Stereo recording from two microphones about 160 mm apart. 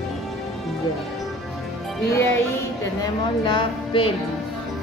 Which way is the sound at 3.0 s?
30° left (ahead or behind).